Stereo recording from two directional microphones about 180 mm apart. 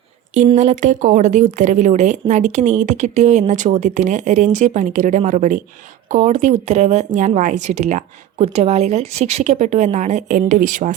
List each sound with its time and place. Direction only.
0.5 s speech: 40° right (ahead or behind)